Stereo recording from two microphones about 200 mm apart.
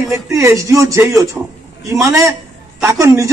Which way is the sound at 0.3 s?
15° right (ahead or behind).